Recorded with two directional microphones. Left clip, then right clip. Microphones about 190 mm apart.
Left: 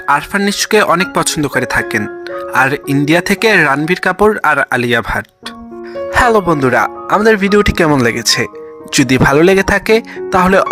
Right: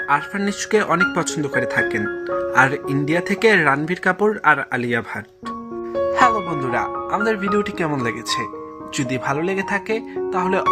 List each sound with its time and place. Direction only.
0.1 s speech: 40° left (ahead or behind)